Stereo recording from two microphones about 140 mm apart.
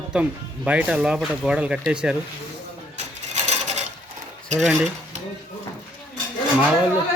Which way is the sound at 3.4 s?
55° right (ahead or behind).